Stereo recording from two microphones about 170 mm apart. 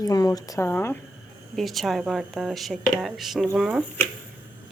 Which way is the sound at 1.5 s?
Centre (ahead or behind).